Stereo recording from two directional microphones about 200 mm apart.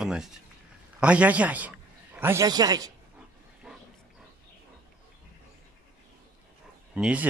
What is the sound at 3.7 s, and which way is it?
Dog, 5° right (ahead or behind).